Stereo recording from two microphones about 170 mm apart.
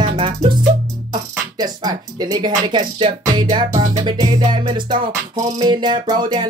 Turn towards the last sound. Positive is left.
turn(degrees=-25)  # may be behind; listen again after turning